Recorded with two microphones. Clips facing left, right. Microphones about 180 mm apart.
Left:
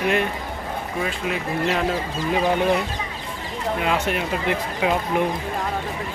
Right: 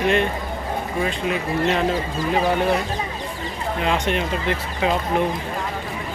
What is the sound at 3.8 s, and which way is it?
Speech, 5° left (ahead or behind).